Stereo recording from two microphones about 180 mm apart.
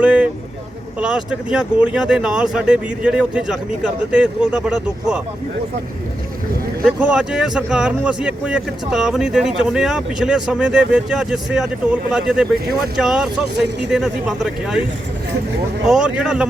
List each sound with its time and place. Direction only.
0.0 s vehicle: 5° right (ahead or behind)
0.9 s speech: 5° right (ahead or behind)
6.8 s speech: 5° right (ahead or behind)
13.6 s speech: 70° right (ahead or behind)
13.9 s speech: centre (ahead or behind)
15.9 s speech: 5° right (ahead or behind)